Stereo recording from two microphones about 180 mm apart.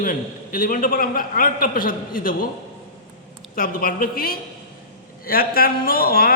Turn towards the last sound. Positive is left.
turn(degrees=55)  # may be behind; listen again after turning